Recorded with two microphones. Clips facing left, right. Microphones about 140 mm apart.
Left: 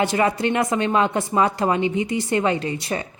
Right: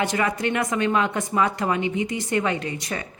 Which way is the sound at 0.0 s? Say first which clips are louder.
Left 4 dB; 30° left (ahead or behind).